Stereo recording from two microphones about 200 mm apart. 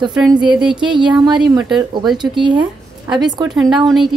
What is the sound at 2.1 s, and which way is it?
Speech, 25° right (ahead or behind).